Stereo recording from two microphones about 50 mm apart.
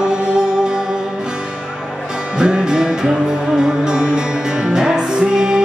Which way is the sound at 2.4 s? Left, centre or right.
Centre.